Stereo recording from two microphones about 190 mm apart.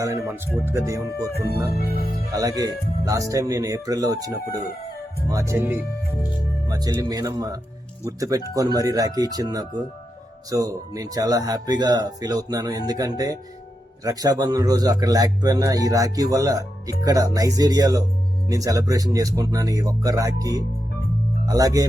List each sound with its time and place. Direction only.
0.0 s speech: 15° right (ahead or behind)
1.7 s speech: 55° left (ahead or behind)
2.3 s speech: 20° right (ahead or behind)